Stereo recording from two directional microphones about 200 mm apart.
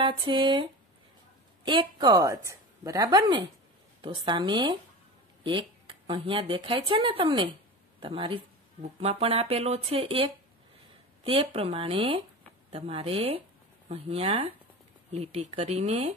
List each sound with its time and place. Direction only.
0.0 s speech: 25° right (ahead or behind)